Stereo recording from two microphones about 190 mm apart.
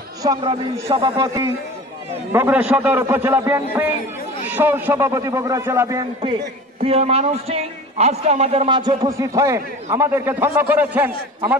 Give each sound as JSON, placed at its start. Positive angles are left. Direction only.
{"t": 0.2, "sound": "a man's voice", "side_deg": -20}
{"t": 6.8, "sound": "a man's voice", "side_deg": -30}